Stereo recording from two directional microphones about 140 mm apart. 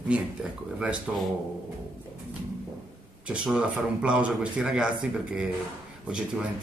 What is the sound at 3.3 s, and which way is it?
A man's voice, 5° right (ahead or behind).